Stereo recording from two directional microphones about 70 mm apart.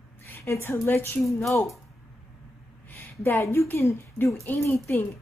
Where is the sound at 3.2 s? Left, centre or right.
Left.